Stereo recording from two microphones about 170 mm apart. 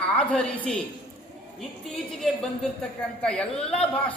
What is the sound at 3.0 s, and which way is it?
A woman's voice, 5° left (ahead or behind).